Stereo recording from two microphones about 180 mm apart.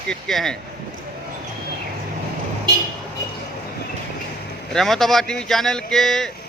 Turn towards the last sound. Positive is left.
turn(degrees=0)  # may be behind; listen again after turning